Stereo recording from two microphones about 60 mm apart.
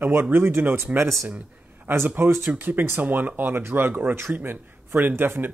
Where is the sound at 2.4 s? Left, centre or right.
Right.